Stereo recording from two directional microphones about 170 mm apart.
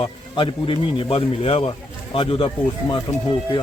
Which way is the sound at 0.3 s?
30° left (ahead or behind).